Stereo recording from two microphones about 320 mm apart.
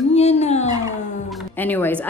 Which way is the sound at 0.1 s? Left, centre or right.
Centre.